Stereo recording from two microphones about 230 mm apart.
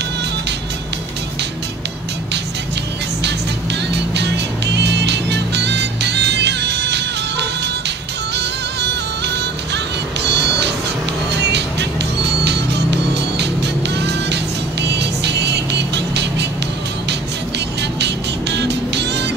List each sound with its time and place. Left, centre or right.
3.9 s music: right
12.4 s music: right
17.9 s music: right